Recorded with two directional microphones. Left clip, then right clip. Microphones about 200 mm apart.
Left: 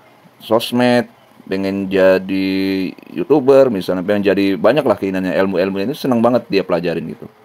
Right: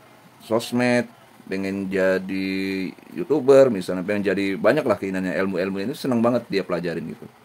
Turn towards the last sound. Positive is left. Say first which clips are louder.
# left 8 dB
turn(degrees=20)  # may be behind; listen again after turning